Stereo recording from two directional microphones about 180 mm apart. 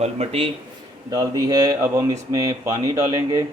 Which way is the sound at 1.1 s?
20° right (ahead or behind).